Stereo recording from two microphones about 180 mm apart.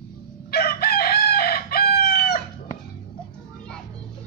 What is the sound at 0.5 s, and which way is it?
Chicken, 60° left (ahead or behind).